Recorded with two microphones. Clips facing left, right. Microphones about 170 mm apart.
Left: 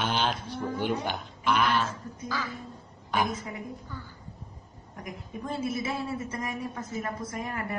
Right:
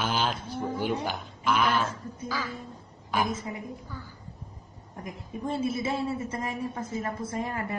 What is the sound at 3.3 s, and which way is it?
Speech, 25° right (ahead or behind).